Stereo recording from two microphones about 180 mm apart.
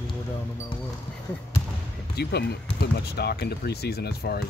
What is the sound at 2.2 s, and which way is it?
Speech, 65° left (ahead or behind).